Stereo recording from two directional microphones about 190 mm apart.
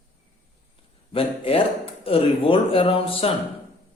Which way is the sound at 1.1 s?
30° left (ahead or behind).